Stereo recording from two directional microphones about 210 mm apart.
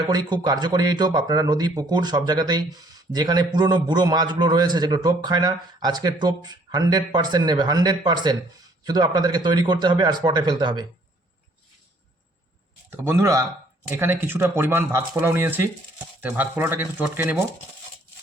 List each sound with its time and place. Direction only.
0.1 s speech: 20° right (ahead or behind)
12.9 s speech: 10° right (ahead or behind)